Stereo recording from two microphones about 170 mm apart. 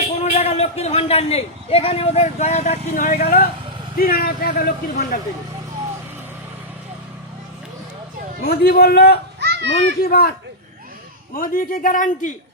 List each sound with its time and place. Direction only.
0.3 s a man's voice: 40° left (ahead or behind)
3.9 s speech: 60° left (ahead or behind)
8.4 s a man's voice: 65° left (ahead or behind)
9.4 s children playing: 80° right
10.0 s speech: 65° left (ahead or behind)
11.3 s a man's voice: 55° left (ahead or behind)